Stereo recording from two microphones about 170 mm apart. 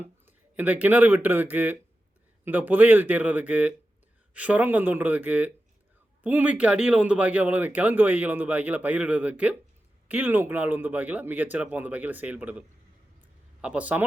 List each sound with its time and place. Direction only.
0.0 s speech: 10° right (ahead or behind)